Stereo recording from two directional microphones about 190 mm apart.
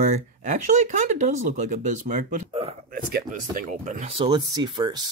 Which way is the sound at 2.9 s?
55° right (ahead or behind).